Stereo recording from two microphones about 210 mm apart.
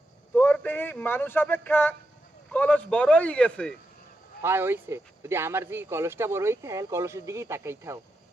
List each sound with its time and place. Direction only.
0.3 s a man's voice: 5° left (ahead or behind)
4.4 s speech: 10° right (ahead or behind)